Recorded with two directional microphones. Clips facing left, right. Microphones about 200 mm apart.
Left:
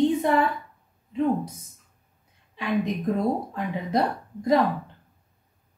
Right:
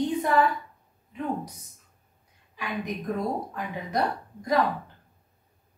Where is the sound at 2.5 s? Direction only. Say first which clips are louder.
Left 6 dB; 25° left (ahead or behind).